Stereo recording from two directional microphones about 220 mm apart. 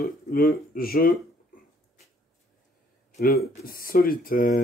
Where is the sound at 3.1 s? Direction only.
45° left (ahead or behind).